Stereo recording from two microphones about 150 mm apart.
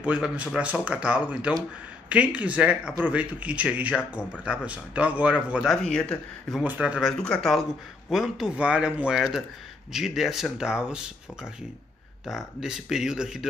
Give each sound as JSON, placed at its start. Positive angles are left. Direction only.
{"t": 0.0, "sound": "speech", "side_deg": -10}
{"t": 6.6, "sound": "speech", "side_deg": -10}
{"t": 12.3, "sound": "speech", "side_deg": 0}